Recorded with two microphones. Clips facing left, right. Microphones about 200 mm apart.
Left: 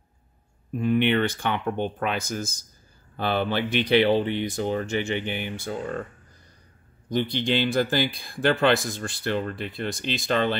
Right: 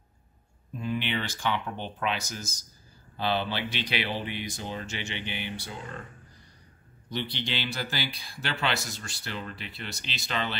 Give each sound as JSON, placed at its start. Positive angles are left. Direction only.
{"t": 0.7, "sound": "speech", "side_deg": 60}
{"t": 7.1, "sound": "speech", "side_deg": 45}